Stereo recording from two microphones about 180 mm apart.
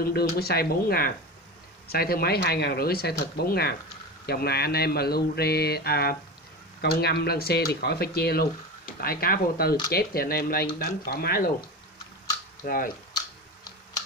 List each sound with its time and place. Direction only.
0.0 s speech: 60° left (ahead or behind)
12.6 s speech: 55° left (ahead or behind)